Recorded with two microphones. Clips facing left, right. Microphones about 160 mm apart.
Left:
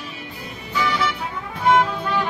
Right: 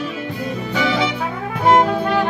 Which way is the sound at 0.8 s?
90° right.